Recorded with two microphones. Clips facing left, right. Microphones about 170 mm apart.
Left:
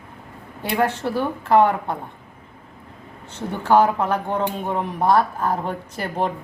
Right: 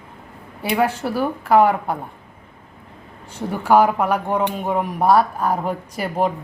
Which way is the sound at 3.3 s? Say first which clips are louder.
Right 2 dB; 10° right (ahead or behind).